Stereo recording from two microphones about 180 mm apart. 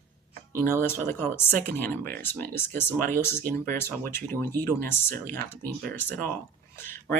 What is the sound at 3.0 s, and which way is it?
Speech, 50° right (ahead or behind).